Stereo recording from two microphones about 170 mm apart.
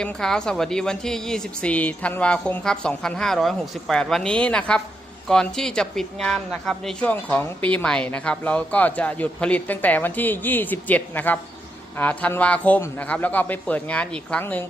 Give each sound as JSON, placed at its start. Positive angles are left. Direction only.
{"t": 0.0, "sound": "a woman's voice", "side_deg": 5}